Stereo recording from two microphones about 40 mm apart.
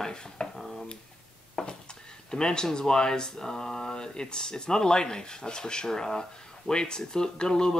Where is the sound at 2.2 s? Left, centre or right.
Centre.